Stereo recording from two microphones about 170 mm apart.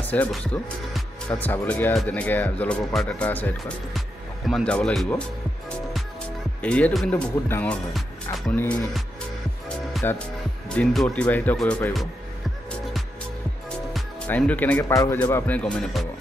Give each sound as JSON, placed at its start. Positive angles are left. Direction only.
{"t": 0.1, "sound": "speech", "side_deg": 10}
{"t": 6.6, "sound": "speech", "side_deg": 10}
{"t": 10.0, "sound": "speech", "side_deg": 10}
{"t": 13.9, "sound": "speech", "side_deg": 10}